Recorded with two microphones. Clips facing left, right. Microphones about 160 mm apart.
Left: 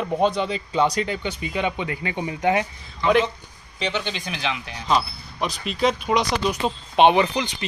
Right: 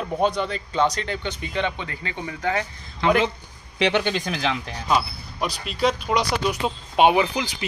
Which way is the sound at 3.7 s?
65° right (ahead or behind).